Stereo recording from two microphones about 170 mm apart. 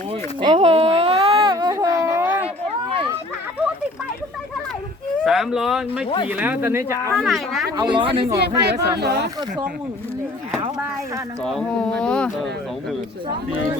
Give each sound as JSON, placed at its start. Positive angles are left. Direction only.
{"t": 0.4, "sound": "a sound", "side_deg": -30}
{"t": 5.2, "sound": "speech", "side_deg": 0}
{"t": 7.2, "sound": "speech", "side_deg": 0}
{"t": 7.8, "sound": "speech", "side_deg": -30}
{"t": 8.6, "sound": "speech", "side_deg": -80}
{"t": 11.4, "sound": "speech", "side_deg": 5}